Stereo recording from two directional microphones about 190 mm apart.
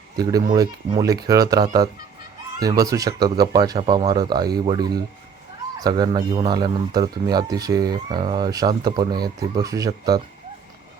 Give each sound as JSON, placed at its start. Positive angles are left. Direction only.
{"t": 0.2, "sound": "speech", "side_deg": -20}